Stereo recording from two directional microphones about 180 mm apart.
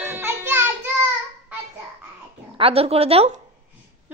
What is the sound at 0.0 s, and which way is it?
Child singing, 10° right (ahead or behind).